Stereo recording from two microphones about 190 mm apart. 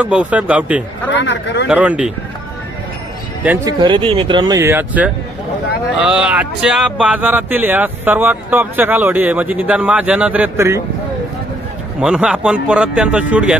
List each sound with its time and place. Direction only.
0.0 s speech: 5° right (ahead or behind)
1.1 s speech: 70° left (ahead or behind)
1.7 s speech: 5° right (ahead or behind)
3.8 s speech: 25° right (ahead or behind); by 10.8 s 10° right (ahead or behind)
12.0 s speech: 5° right (ahead or behind)